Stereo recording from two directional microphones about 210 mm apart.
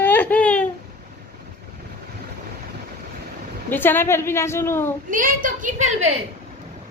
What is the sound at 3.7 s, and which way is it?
Speech, 10° left (ahead or behind).